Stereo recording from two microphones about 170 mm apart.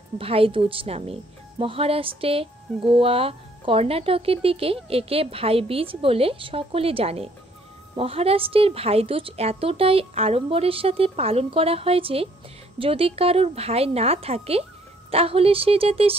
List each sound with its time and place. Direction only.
0.2 s speech: 35° right (ahead or behind)